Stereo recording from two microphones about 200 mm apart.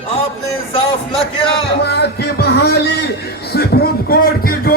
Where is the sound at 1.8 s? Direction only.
55° left (ahead or behind).